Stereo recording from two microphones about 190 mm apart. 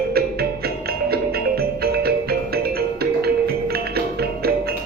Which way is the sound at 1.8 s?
55° right (ahead or behind).